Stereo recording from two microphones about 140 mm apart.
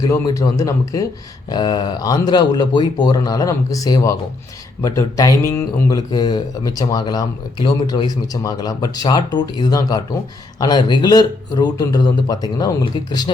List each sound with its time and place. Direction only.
0.0 s speech: 25° left (ahead or behind)